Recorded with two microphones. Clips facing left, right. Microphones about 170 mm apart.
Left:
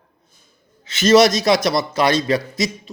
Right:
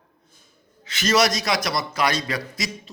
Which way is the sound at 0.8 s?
25° left (ahead or behind).